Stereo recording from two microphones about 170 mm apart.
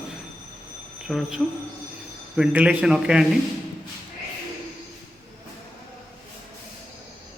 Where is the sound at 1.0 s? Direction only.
Centre (ahead or behind).